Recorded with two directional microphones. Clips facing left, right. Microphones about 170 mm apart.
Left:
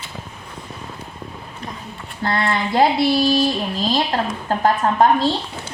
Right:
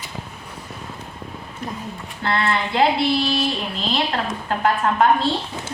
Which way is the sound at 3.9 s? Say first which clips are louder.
Left 2 dB; 35° left (ahead or behind).